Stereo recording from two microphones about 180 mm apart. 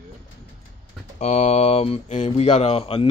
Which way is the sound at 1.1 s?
40° left (ahead or behind).